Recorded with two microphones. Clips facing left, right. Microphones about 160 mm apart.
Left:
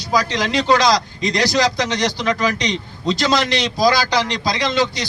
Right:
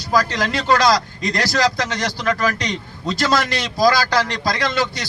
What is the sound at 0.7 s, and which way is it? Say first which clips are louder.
Speech: even; 5° right (ahead or behind).